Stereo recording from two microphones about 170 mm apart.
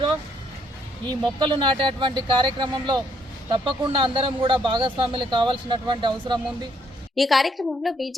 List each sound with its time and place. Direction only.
1.0 s speech: 30° right (ahead or behind)
7.2 s a woman's voice: centre (ahead or behind)